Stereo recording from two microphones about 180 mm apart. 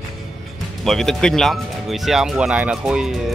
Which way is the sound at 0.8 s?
Centre (ahead or behind).